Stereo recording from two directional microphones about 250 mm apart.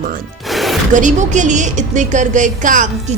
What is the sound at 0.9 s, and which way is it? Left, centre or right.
A woman's voice, right.